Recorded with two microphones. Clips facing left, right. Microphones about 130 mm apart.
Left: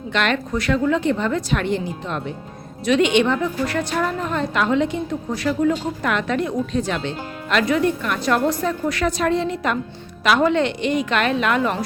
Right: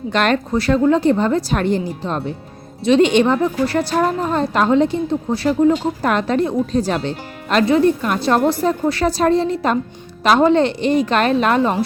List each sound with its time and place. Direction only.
0.1 s a woman's voice: 40° right (ahead or behind)